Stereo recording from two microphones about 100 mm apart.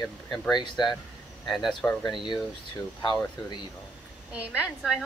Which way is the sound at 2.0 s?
50° left (ahead or behind).